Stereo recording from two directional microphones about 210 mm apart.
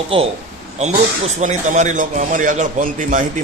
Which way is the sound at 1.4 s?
35° right (ahead or behind).